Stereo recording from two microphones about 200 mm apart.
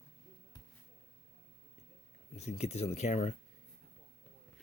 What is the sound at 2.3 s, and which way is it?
Speech, 35° left (ahead or behind).